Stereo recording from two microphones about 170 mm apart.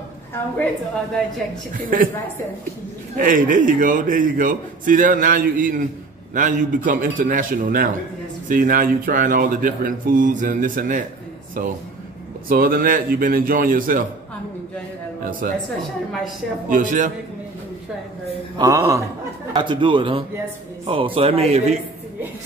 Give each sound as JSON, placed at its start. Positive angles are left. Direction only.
{"t": 3.2, "sound": "a man's voice", "side_deg": -55}
{"t": 15.4, "sound": "a man's voice", "side_deg": -55}
{"t": 16.6, "sound": "a man's voice", "side_deg": -50}
{"t": 18.6, "sound": "a sound", "side_deg": -20}
{"t": 19.5, "sound": "a man's voice", "side_deg": -25}